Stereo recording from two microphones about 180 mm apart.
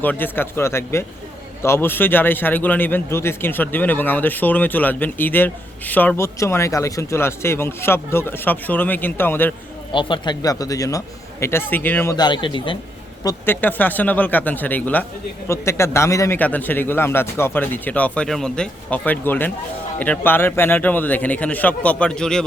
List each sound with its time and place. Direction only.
0.0 s a man's voice: 10° left (ahead or behind)
9.9 s a man's voice: 25° left (ahead or behind); by 12.1 s 10° left (ahead or behind)
12.1 s speech: 25° left (ahead or behind)
13.2 s a man's voice: 10° left (ahead or behind)